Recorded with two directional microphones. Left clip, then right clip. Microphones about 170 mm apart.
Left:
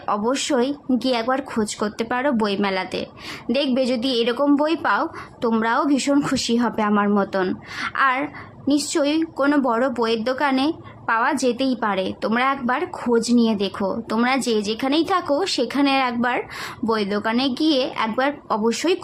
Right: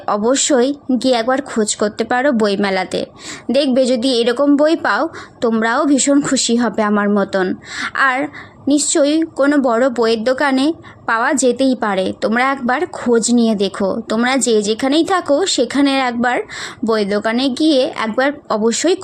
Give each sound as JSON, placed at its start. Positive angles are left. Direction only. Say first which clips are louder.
{"t": 0.0, "sound": "a woman's voice", "louder": "right 6 dB", "side_deg": -25}